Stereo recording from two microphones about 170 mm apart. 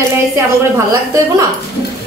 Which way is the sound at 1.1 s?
20° right (ahead or behind).